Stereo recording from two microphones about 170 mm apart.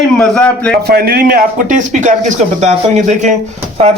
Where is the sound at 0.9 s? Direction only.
65° right (ahead or behind); by 3.4 s 45° right (ahead or behind).